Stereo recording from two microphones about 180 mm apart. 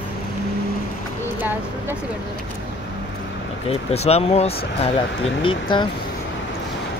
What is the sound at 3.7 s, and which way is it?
Speech, 35° left (ahead or behind).